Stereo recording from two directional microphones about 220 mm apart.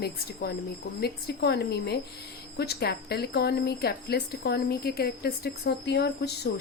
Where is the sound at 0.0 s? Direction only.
45° left (ahead or behind).